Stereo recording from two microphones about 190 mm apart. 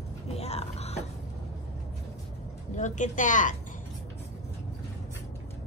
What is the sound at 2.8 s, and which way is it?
Speech, 40° left (ahead or behind).